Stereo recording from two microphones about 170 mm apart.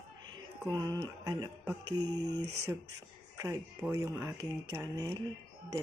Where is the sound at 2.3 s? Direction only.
85° right.